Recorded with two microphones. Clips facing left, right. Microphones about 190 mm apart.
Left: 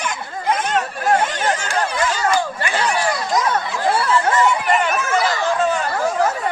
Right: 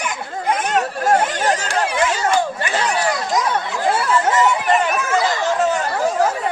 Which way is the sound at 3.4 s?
15° right (ahead or behind).